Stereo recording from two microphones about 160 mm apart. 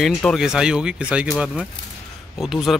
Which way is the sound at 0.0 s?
Centre (ahead or behind).